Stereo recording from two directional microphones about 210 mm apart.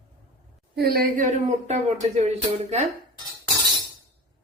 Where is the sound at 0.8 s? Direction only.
45° right (ahead or behind); by 2.3 s 30° right (ahead or behind).